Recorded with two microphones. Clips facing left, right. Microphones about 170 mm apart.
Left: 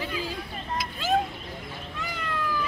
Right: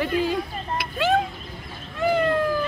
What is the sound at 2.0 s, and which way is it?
Cat, 55° right (ahead or behind).